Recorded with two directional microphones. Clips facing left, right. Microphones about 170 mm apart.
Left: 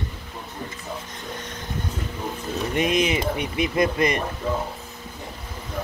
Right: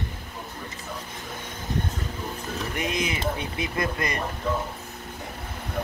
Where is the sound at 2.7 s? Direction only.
20° left (ahead or behind).